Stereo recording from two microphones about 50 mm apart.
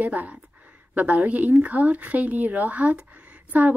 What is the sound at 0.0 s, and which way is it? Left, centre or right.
A woman's voice, right.